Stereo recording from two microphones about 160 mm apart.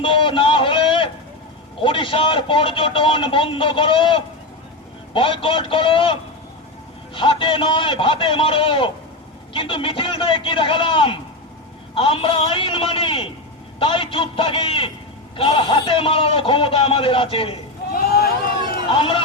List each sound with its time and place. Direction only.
0.0 s a sound: 30° left (ahead or behind)
1.8 s a man's voice: 30° left (ahead or behind)
17.9 s vehicle: 70° left (ahead or behind)
18.9 s a man's voice: 35° left (ahead or behind)